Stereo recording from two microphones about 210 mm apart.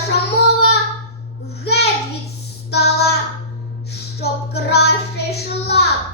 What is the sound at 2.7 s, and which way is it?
Child singing, 50° left (ahead or behind).